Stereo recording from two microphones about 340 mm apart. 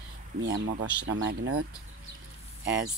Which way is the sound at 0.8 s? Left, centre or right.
Right.